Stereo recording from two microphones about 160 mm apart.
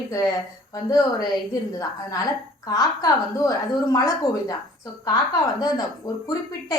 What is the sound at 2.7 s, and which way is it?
A woman's voice, 25° left (ahead or behind).